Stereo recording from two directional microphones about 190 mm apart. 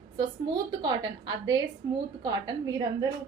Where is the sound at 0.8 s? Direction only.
25° right (ahead or behind).